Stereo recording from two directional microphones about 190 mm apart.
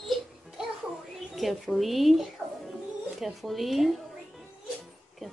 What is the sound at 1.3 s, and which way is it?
Speech, centre (ahead or behind).